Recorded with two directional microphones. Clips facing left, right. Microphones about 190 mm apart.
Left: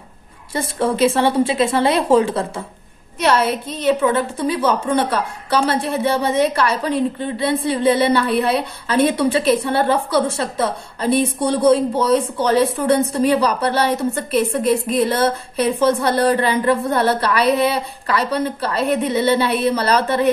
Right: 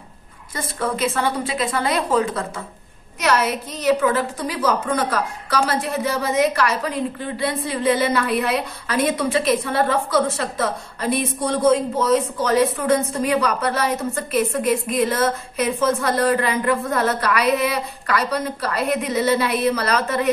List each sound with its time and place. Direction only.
0.6 s a woman's voice: 30° left (ahead or behind)